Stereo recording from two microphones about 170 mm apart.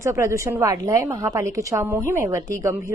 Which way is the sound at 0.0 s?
15° right (ahead or behind).